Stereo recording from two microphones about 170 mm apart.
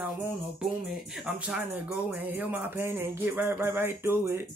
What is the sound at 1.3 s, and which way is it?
Music, 10° right (ahead or behind).